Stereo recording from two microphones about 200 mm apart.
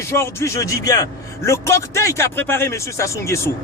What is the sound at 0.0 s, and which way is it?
Speech, 10° left (ahead or behind).